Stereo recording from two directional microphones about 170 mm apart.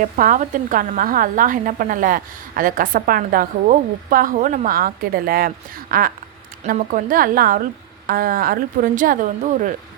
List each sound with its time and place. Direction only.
0.0 s a woman's voice: 50° right (ahead or behind)